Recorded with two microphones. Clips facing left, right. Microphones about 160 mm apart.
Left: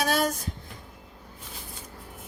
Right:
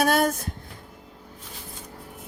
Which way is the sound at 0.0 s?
55° right (ahead or behind).